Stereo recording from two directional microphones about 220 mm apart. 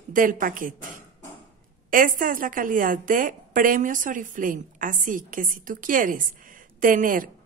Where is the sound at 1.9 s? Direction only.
40° right (ahead or behind).